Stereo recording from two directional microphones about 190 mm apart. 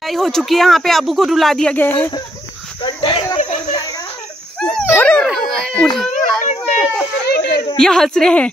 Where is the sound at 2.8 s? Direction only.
25° left (ahead or behind).